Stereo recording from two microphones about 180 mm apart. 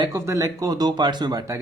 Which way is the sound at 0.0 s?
20° right (ahead or behind).